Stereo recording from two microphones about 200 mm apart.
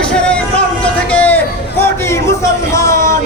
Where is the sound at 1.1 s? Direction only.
10° left (ahead or behind).